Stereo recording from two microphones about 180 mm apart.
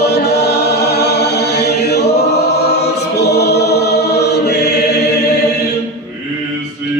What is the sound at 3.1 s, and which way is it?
Choir, 65° left (ahead or behind).